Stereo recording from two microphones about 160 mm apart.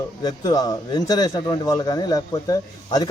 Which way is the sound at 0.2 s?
25° left (ahead or behind).